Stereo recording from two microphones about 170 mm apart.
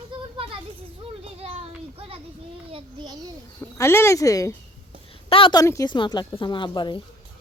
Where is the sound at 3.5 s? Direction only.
15° left (ahead or behind).